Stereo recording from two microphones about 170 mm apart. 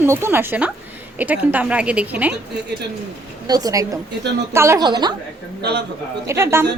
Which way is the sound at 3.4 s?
20° right (ahead or behind).